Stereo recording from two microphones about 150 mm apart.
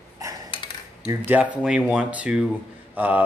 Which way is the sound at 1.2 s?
10° right (ahead or behind).